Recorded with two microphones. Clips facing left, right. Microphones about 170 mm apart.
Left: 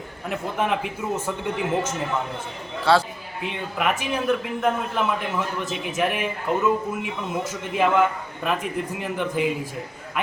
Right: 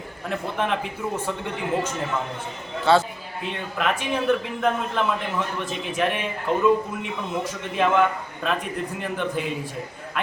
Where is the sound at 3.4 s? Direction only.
10° left (ahead or behind).